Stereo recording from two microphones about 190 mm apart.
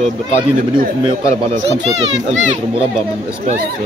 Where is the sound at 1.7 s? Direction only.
65° right (ahead or behind).